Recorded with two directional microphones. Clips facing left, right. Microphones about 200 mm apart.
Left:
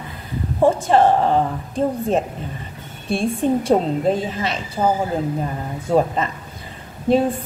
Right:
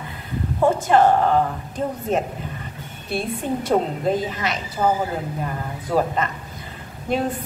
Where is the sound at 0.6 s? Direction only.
30° left (ahead or behind).